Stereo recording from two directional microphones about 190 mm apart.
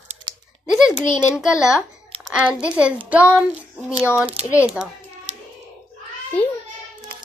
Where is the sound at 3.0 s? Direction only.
5° right (ahead or behind).